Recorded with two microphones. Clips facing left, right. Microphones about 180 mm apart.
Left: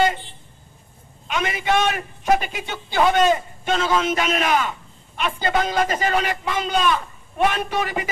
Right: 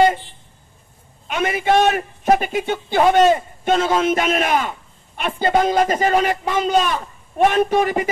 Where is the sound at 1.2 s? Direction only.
45° right (ahead or behind).